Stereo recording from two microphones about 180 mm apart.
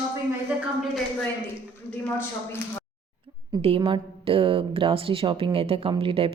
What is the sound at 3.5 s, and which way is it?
A woman's voice, 25° right (ahead or behind).